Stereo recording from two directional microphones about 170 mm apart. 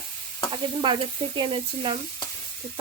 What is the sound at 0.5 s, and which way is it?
Stir, 30° right (ahead or behind).